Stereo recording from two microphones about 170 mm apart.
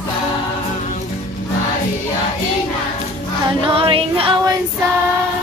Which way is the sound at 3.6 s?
30° right (ahead or behind).